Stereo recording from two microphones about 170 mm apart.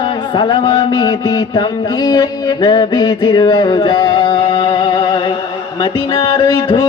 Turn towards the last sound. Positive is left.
turn(degrees=25)  # may be behind; listen again after turning